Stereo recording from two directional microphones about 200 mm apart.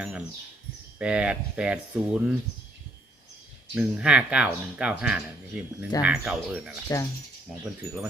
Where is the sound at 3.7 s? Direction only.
5° right (ahead or behind).